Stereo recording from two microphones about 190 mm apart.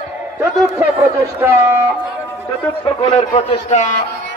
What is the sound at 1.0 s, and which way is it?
Speech, 15° right (ahead or behind).